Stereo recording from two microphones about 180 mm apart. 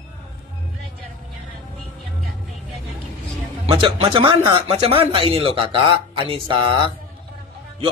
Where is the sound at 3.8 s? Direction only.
30° right (ahead or behind).